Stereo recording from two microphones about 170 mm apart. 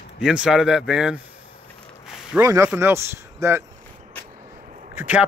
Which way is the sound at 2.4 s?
20° right (ahead or behind).